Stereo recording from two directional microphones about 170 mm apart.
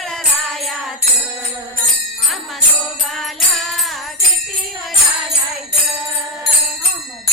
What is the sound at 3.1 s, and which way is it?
Music, centre (ahead or behind).